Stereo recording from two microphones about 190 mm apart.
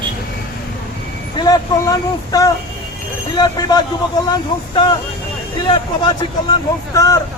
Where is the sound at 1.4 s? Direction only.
20° left (ahead or behind).